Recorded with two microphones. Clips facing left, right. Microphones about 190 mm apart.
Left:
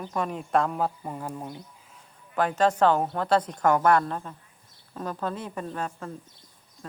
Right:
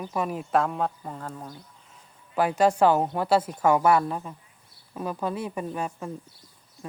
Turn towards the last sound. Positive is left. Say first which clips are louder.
# right 2 dB
turn(degrees=-10)  # may be behind; listen again after turning